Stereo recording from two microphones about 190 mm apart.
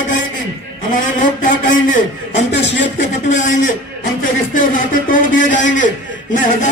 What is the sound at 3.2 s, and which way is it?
A man's voice, 40° left (ahead or behind).